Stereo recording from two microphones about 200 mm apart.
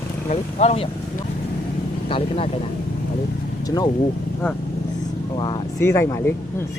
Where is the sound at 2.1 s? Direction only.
30° left (ahead or behind).